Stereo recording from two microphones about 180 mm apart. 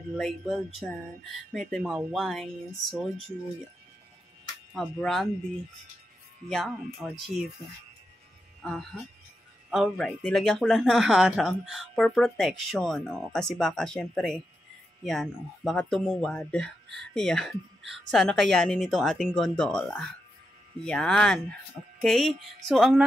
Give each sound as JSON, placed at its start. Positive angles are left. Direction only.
{"t": 0.2, "sound": "speech", "side_deg": 0}
{"t": 4.7, "sound": "speech", "side_deg": 0}
{"t": 6.5, "sound": "speech", "side_deg": 0}
{"t": 8.6, "sound": "speech", "side_deg": 5}